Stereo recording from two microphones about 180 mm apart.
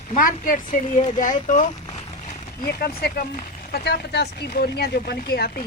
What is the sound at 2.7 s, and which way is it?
Speech, 55° left (ahead or behind).